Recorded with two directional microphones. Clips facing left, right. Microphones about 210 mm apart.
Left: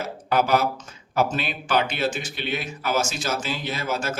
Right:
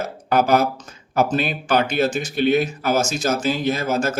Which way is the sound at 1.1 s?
45° right (ahead or behind).